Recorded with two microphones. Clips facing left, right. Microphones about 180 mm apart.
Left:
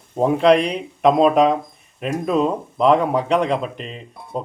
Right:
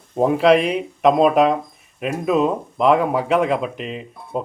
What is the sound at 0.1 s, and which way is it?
Speech, centre (ahead or behind).